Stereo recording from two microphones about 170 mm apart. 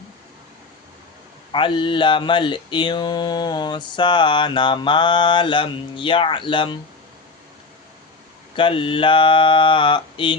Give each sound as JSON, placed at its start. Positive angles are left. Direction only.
{"t": 1.5, "sound": "mantra", "side_deg": 30}
{"t": 8.5, "sound": "mantra", "side_deg": 30}